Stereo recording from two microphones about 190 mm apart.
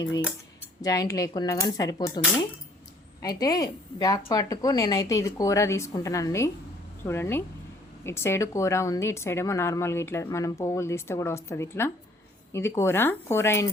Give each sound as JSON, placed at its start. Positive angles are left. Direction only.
{"t": 0.8, "sound": "a woman's voice", "side_deg": 15}